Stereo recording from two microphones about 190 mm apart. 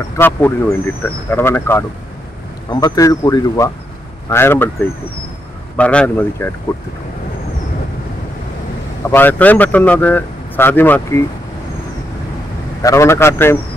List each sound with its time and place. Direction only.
0.2 s speech: 10° left (ahead or behind)
5.8 s speech: 5° left (ahead or behind)
9.1 s speech: 10° left (ahead or behind)
12.8 s speech: 15° left (ahead or behind)